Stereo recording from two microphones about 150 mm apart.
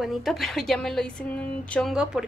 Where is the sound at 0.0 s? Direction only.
Centre (ahead or behind).